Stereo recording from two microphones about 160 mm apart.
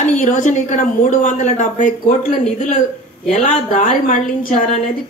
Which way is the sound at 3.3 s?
40° left (ahead or behind).